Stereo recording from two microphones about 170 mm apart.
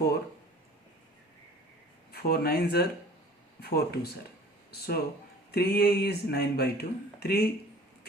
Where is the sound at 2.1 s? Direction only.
65° left (ahead or behind).